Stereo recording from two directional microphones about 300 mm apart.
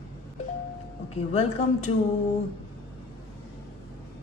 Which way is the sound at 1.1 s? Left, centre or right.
Left.